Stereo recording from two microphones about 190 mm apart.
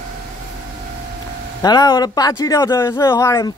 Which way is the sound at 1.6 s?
20° left (ahead or behind).